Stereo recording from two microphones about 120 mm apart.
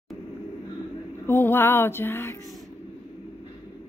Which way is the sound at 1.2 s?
20° left (ahead or behind).